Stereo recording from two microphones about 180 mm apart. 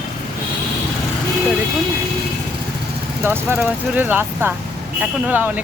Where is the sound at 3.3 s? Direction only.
10° right (ahead or behind).